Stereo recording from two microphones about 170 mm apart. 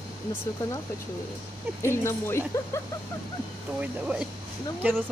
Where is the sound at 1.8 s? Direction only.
15° left (ahead or behind).